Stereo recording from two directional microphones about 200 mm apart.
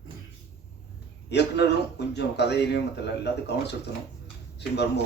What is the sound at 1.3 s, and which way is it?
Speech, 55° left (ahead or behind).